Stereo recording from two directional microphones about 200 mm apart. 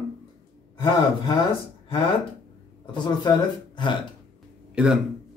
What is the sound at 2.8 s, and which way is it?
Speech, 20° left (ahead or behind).